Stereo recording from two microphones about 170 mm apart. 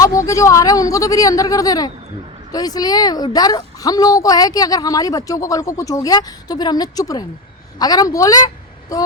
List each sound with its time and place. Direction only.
0.0 s a woman's voice: 20° left (ahead or behind)